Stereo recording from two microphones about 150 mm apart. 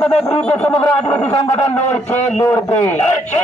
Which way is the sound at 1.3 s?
40° left (ahead or behind).